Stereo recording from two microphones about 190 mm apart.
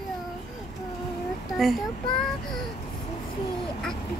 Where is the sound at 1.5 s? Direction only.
Centre (ahead or behind).